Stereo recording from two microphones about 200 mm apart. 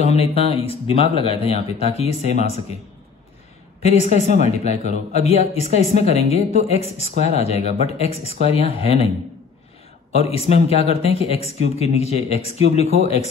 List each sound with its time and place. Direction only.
0.0 s speech: 30° left (ahead or behind)
3.8 s speech: 35° left (ahead or behind)
10.1 s speech: 30° left (ahead or behind)